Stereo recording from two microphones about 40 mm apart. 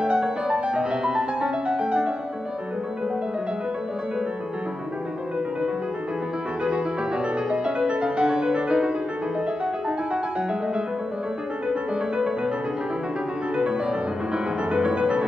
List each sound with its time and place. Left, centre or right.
0.0 s music: centre
7.4 s music: right
13.6 s music: right